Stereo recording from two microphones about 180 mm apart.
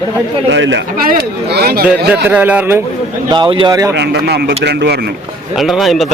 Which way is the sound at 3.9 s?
65° right (ahead or behind).